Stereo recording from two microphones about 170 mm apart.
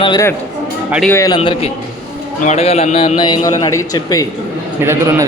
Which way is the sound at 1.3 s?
35° left (ahead or behind).